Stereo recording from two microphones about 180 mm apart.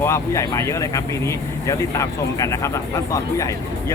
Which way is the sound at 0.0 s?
15° left (ahead or behind).